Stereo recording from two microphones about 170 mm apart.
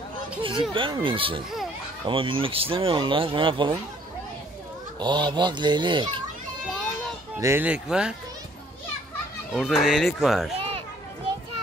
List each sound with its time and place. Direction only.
0.4 s speech: 30° right (ahead or behind)
5.0 s speech: 25° right (ahead or behind)
7.3 s speech: 15° right (ahead or behind)
9.5 s speech: centre (ahead or behind)
10.5 s a sound: 35° right (ahead or behind)